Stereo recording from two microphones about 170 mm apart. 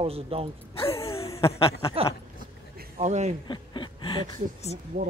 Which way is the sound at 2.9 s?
40° right (ahead or behind).